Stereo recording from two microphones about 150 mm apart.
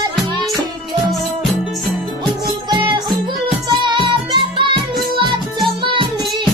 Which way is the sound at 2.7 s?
30° right (ahead or behind).